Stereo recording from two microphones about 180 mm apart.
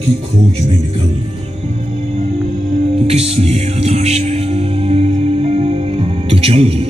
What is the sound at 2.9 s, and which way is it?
Music, 35° right (ahead or behind).